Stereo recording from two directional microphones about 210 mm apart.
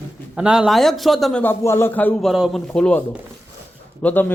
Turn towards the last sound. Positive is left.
turn(degrees=10)  # may be behind; listen again after turning